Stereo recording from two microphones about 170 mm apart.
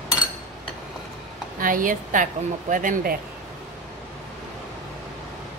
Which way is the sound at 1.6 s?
55° right (ahead or behind).